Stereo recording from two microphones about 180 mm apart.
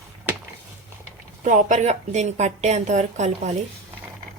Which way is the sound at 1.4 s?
40° right (ahead or behind).